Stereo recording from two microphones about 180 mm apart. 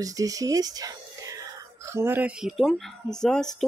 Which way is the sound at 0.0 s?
20° right (ahead or behind).